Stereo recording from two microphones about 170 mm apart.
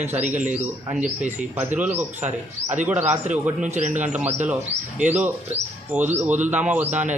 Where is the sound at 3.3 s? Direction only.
10° right (ahead or behind).